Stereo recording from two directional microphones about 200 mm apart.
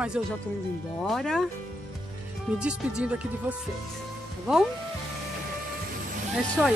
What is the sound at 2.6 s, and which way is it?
Speech, 5° right (ahead or behind).